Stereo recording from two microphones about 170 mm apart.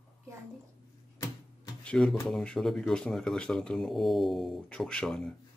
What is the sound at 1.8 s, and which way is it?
Speech, 5° left (ahead or behind).